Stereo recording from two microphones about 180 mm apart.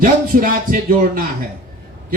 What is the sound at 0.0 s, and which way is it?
A man's voice, 50° right (ahead or behind).